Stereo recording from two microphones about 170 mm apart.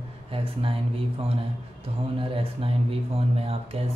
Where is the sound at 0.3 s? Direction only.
35° right (ahead or behind).